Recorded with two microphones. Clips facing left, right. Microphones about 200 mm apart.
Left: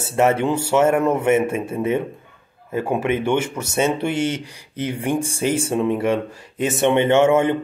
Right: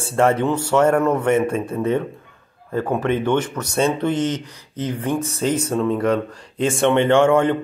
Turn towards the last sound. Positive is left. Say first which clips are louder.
# even
turn(degrees=5)  # may be behind; listen again after turning